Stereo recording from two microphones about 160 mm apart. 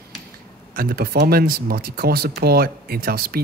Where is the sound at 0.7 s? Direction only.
65° right (ahead or behind).